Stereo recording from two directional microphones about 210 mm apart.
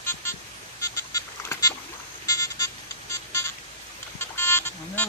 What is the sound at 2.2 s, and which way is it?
Vehicle, 15° left (ahead or behind).